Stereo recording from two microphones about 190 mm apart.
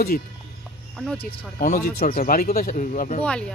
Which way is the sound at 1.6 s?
45° left (ahead or behind).